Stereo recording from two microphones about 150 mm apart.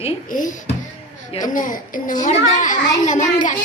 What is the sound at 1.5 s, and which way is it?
A child's voice, 60° left (ahead or behind).